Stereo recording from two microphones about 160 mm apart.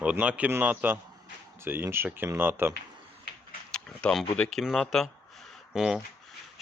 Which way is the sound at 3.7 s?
5° left (ahead or behind).